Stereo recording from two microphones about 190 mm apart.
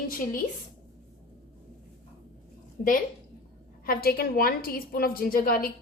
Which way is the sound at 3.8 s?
50° left (ahead or behind).